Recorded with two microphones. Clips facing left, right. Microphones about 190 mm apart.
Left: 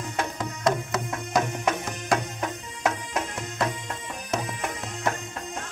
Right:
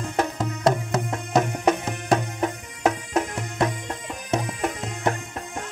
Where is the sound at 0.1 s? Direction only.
40° right (ahead or behind).